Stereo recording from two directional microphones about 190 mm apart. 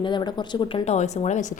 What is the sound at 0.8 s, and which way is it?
Speech, 35° left (ahead or behind).